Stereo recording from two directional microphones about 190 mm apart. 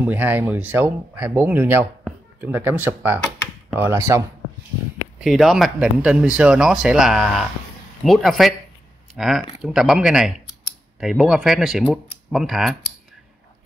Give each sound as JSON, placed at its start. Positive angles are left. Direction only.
{"t": 0.0, "sound": "speech", "side_deg": -10}
{"t": 5.2, "sound": "speech", "side_deg": 0}